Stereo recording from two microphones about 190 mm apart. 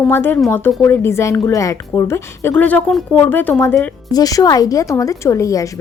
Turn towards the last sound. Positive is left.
turn(degrees=15)  # may be behind; listen again after turning